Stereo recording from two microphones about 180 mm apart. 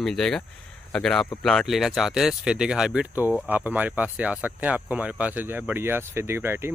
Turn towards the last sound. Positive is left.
turn(degrees=-15)  # may be behind; listen again after turning